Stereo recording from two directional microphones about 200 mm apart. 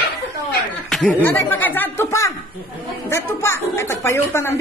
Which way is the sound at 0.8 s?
5° left (ahead or behind).